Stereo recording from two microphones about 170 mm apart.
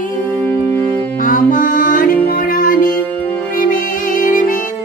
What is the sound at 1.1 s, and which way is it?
Music, 55° left (ahead or behind).